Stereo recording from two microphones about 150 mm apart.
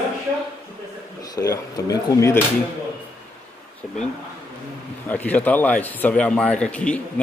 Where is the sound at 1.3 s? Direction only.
25° left (ahead or behind).